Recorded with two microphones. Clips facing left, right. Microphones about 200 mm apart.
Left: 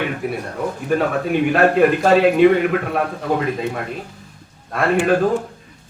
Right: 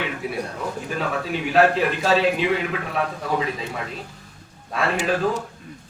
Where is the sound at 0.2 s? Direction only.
50° left (ahead or behind).